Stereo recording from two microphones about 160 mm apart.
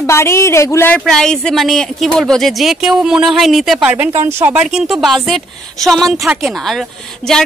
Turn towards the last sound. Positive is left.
turn(degrees=0)  # may be behind; listen again after turning